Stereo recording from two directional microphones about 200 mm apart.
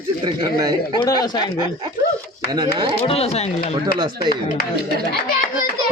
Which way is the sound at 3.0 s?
30° left (ahead or behind).